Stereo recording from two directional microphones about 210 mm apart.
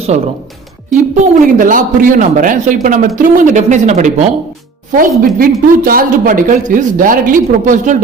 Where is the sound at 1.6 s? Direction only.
40° right (ahead or behind).